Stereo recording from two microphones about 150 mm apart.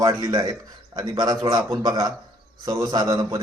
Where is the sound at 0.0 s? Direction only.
25° right (ahead or behind).